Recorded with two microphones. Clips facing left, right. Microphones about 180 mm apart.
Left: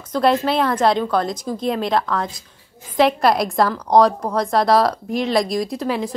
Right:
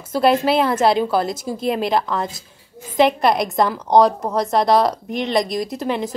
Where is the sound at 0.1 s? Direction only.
5° right (ahead or behind).